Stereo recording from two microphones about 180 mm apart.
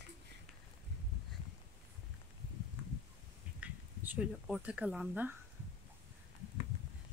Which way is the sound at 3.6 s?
10° right (ahead or behind).